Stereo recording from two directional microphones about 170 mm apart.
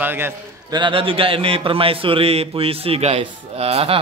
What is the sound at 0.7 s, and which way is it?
A man's voice, 30° right (ahead or behind).